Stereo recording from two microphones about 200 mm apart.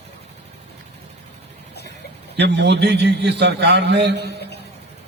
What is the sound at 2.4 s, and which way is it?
A man's voice, 60° right (ahead or behind).